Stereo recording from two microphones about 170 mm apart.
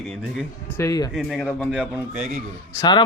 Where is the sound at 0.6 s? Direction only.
15° left (ahead or behind).